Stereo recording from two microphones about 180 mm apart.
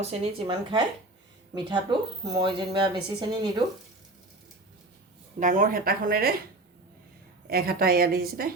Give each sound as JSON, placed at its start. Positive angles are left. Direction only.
{"t": 0.0, "sound": "speech", "side_deg": -35}
{"t": 1.5, "sound": "speech", "side_deg": -25}
{"t": 5.4, "sound": "speech", "side_deg": -45}
{"t": 7.4, "sound": "a woman's voice", "side_deg": -55}